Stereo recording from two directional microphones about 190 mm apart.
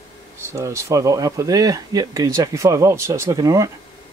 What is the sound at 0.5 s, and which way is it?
Speech, 15° right (ahead or behind).